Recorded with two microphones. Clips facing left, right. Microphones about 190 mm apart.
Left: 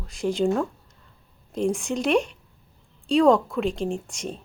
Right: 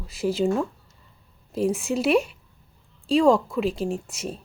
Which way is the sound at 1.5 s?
5° right (ahead or behind).